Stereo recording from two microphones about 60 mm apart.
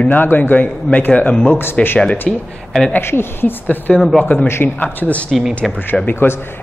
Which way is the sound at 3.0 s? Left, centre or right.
Left.